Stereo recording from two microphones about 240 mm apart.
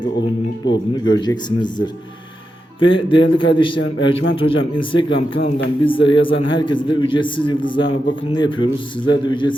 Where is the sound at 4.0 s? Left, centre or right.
Left.